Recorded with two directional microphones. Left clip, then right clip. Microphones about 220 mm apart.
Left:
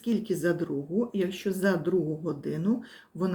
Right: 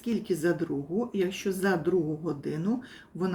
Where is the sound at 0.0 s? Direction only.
5° left (ahead or behind).